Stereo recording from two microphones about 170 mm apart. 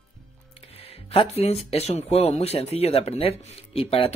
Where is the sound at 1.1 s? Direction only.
35° left (ahead or behind).